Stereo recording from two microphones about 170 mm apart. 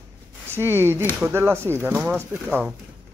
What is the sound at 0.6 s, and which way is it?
Speech, 15° right (ahead or behind).